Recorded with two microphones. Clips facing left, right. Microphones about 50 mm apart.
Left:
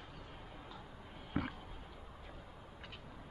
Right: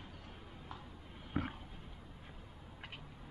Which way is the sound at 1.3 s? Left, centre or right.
Centre.